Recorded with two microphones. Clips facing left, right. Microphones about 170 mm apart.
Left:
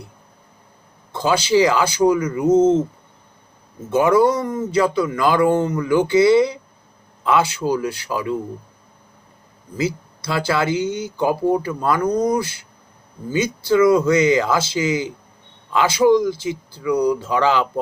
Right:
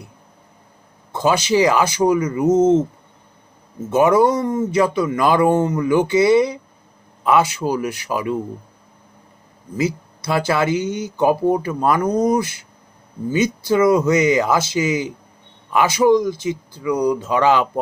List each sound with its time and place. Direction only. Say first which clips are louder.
1.1 s speech: even; 20° right (ahead or behind)
3.9 s speech: right 1 dB; 20° right (ahead or behind)
9.7 s speech: right 2 dB; 20° right (ahead or behind)